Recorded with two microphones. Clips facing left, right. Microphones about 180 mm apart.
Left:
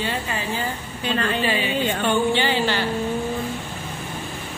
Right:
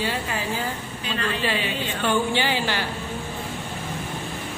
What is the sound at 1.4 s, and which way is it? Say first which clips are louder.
Speech: left 4 dB; centre (ahead or behind).